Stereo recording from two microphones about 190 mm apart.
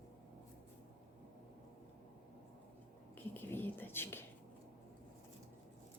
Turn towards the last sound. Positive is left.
turn(degrees=10)  # may be behind; listen again after turning